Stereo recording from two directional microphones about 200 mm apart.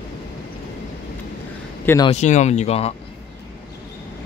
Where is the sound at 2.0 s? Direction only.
35° left (ahead or behind).